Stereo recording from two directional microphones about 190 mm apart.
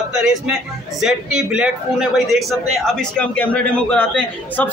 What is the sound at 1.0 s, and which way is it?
A man's voice, 5° right (ahead or behind).